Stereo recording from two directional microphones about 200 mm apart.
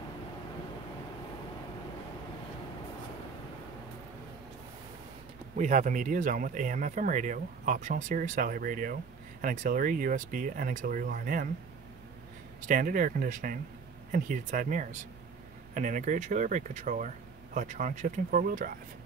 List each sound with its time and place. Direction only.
5.6 s speech: 40° right (ahead or behind)
12.6 s speech: 45° right (ahead or behind)